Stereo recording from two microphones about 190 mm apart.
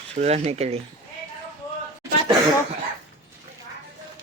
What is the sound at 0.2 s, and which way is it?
Speech, 35° right (ahead or behind).